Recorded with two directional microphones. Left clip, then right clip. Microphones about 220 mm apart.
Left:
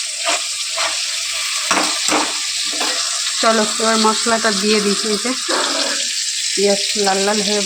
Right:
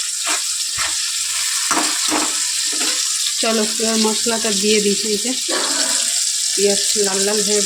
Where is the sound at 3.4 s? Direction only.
10° right (ahead or behind).